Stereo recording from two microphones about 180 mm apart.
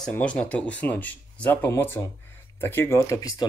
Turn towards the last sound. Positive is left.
turn(degrees=20)  # may be behind; listen again after turning